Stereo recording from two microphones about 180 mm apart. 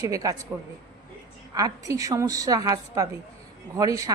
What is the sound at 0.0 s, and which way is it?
Speech, 20° right (ahead or behind).